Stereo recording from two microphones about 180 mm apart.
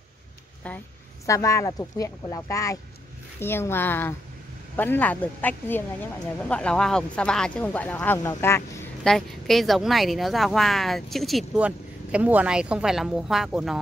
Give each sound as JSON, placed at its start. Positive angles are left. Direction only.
{"t": 0.7, "sound": "speech", "side_deg": 5}
{"t": 9.0, "sound": "speech", "side_deg": 0}